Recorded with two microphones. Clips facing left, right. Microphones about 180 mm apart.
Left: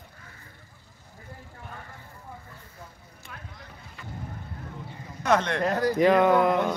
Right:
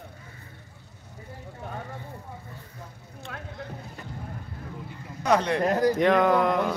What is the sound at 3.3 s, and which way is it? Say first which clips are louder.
Vehicle: right 6 dB; 90° right.